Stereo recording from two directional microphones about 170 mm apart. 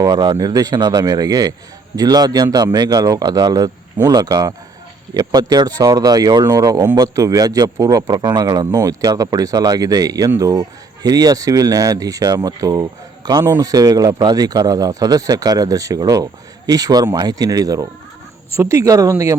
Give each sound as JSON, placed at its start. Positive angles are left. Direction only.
{"t": 0.0, "sound": "speech", "side_deg": -25}